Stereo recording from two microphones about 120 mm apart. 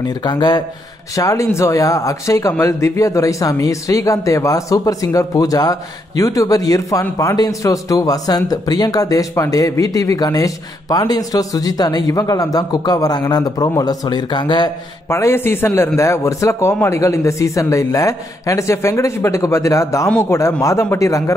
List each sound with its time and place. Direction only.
0.1 s a man's voice: 35° left (ahead or behind)
15.0 s speech: 20° left (ahead or behind)